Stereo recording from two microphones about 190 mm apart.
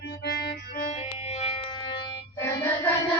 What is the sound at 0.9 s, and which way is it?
Music, 35° left (ahead or behind).